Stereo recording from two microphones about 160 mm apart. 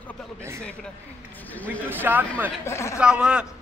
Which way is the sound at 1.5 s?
10° left (ahead or behind).